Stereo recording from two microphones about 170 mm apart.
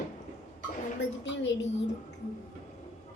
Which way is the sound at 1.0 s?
90° left.